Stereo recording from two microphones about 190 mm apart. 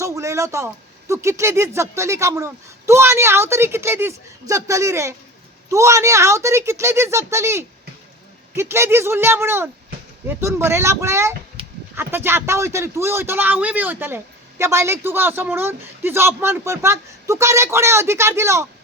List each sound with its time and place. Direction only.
0.0 s speech: 15° right (ahead or behind)
11.6 s a sound: 30° right (ahead or behind)
11.9 s speech: 10° right (ahead or behind)